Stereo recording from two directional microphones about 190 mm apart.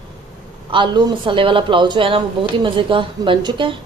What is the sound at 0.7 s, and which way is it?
A woman's voice, 25° right (ahead or behind).